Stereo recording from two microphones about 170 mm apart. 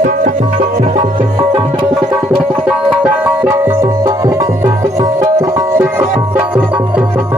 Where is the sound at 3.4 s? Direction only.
15° right (ahead or behind).